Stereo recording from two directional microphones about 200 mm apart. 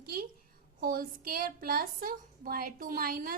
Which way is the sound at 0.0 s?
45° right (ahead or behind).